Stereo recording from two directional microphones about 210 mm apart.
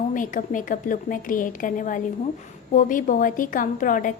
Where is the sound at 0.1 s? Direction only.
40° left (ahead or behind).